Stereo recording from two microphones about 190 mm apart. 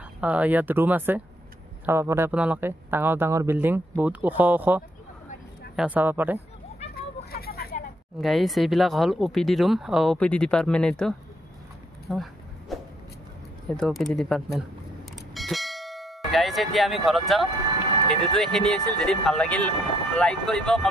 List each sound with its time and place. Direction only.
0.2 s speech: 5° right (ahead or behind)
7.0 s vehicle: 55° left (ahead or behind)
8.2 s speech: centre (ahead or behind)
12.1 s a sound: centre (ahead or behind)
13.7 s speech: centre (ahead or behind)